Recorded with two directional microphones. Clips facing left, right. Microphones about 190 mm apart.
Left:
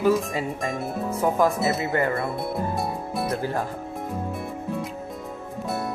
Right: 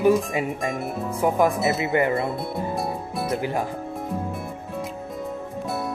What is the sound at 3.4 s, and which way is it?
Speech, 15° right (ahead or behind).